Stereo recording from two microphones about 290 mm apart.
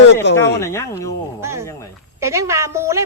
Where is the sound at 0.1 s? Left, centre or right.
Left.